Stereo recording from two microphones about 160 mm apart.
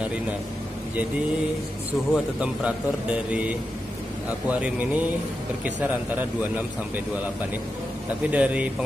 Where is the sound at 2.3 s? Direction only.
5° right (ahead or behind).